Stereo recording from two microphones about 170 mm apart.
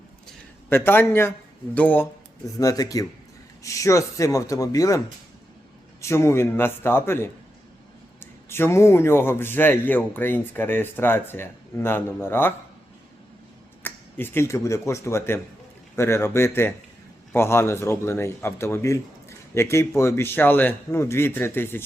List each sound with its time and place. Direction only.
0.7 s a man's voice: 15° left (ahead or behind)
2.6 s speech: 20° left (ahead or behind)
6.0 s a man's voice: 15° left (ahead or behind)
13.8 s a man's voice: 15° left (ahead or behind)